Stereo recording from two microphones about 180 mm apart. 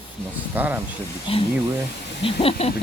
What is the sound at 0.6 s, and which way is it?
Speech, 10° right (ahead or behind).